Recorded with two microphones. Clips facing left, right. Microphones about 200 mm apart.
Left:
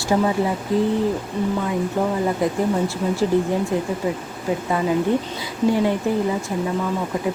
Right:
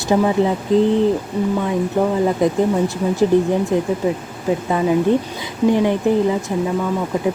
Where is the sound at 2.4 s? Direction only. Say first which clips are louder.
Right 4 dB; 20° right (ahead or behind).